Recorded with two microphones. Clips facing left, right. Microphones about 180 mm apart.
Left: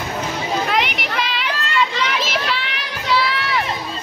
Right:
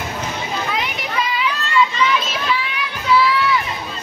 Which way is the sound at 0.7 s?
75° left (ahead or behind).